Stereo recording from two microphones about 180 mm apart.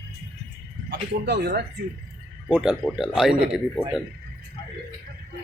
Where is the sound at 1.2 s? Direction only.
60° right (ahead or behind).